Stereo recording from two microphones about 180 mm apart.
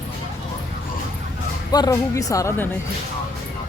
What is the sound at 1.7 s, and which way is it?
Speech, 20° left (ahead or behind).